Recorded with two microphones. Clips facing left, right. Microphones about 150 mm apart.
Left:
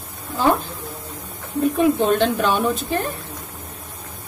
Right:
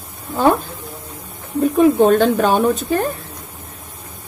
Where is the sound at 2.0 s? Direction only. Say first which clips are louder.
Right 5 dB; 45° right (ahead or behind).